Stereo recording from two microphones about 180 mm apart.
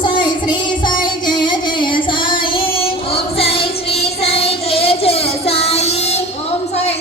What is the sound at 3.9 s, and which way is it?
Child singing, 35° left (ahead or behind).